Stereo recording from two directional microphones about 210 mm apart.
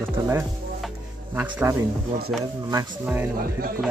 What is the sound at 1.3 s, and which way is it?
Speech, 10° right (ahead or behind).